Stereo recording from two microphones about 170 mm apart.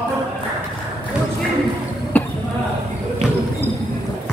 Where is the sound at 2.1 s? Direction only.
10° left (ahead or behind).